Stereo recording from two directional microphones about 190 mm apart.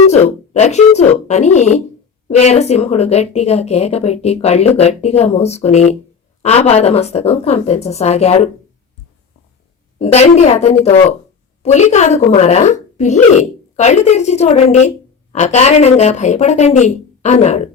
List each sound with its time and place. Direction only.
0.0 s a woman's voice: 35° left (ahead or behind)
10.0 s a woman's voice: 35° left (ahead or behind)